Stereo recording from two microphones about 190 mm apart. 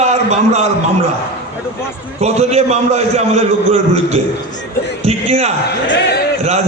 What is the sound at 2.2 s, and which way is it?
A man's voice, 35° right (ahead or behind).